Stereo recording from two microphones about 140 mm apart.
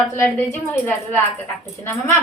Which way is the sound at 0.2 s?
15° left (ahead or behind).